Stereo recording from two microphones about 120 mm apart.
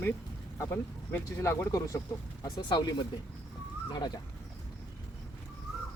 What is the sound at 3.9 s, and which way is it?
Speech, 35° left (ahead or behind).